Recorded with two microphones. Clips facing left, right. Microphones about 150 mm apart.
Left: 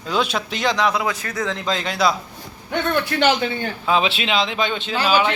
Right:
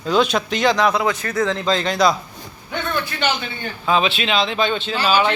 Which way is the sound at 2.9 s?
75° left (ahead or behind).